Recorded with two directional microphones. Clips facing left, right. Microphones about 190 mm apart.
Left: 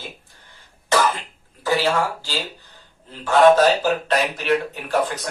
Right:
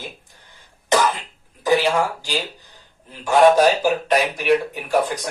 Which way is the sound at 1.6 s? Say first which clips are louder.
Right 2 dB; 15° right (ahead or behind).